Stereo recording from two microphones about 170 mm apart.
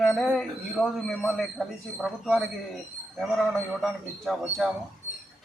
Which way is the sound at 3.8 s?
Centre (ahead or behind).